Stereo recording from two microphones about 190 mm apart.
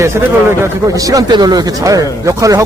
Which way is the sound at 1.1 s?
20° right (ahead or behind).